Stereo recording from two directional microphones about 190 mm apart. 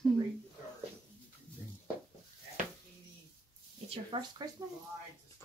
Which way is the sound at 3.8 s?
30° right (ahead or behind).